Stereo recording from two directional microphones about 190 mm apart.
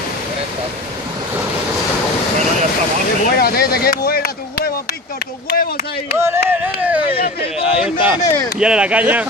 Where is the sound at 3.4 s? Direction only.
55° left (ahead or behind).